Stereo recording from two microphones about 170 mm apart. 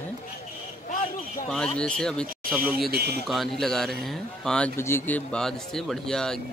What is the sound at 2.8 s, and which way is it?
Speech, 70° right (ahead or behind).